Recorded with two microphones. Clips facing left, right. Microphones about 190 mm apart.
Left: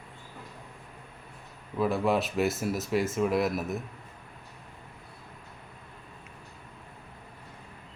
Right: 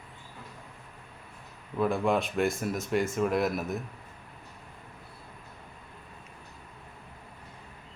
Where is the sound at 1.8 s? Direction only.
5° left (ahead or behind).